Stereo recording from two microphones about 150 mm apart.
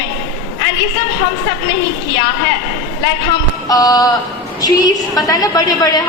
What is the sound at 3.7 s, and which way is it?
A woman's voice, 25° left (ahead or behind).